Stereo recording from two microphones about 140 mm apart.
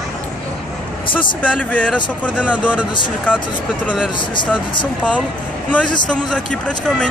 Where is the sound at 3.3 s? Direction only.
10° left (ahead or behind).